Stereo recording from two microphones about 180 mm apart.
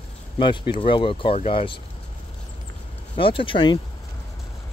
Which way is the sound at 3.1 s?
30° left (ahead or behind).